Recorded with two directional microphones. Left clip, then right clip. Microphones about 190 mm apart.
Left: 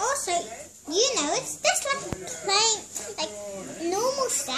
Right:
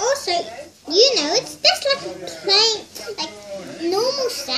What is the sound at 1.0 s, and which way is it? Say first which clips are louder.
Speech: right 9 dB; 20° left (ahead or behind).